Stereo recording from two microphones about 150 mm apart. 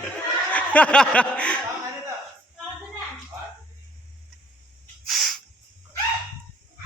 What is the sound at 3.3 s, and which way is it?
Dog, 20° right (ahead or behind).